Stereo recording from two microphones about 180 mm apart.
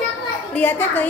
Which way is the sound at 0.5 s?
10° left (ahead or behind).